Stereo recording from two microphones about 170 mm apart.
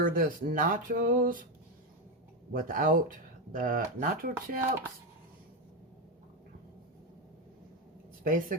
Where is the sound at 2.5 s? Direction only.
55° right (ahead or behind).